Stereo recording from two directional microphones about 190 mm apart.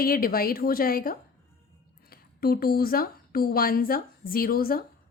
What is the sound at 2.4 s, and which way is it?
A woman's voice, 50° left (ahead or behind).